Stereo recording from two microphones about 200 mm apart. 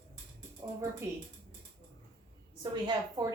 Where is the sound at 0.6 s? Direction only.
10° right (ahead or behind).